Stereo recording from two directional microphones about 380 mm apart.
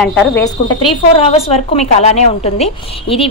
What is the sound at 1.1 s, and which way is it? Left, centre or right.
A woman's voice, centre.